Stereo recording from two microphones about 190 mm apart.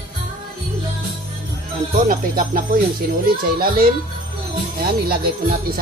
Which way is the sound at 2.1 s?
50° right (ahead or behind).